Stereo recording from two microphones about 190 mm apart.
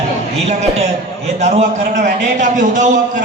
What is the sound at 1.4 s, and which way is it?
A man's voice, 35° right (ahead or behind).